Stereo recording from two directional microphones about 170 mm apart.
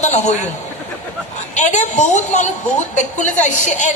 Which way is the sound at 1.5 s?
45° left (ahead or behind).